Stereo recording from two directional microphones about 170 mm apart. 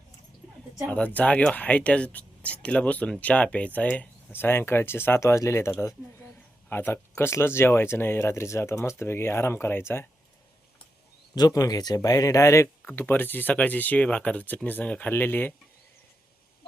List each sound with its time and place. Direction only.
0.9 s speech: 10° left (ahead or behind)
11.3 s speech: 20° left (ahead or behind)